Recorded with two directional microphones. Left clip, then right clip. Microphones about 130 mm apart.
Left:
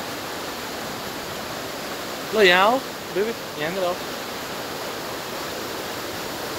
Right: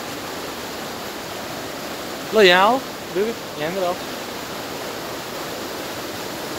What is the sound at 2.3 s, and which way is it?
Speech, 60° right (ahead or behind).